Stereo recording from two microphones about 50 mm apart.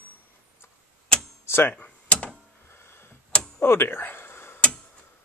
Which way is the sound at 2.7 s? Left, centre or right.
Left.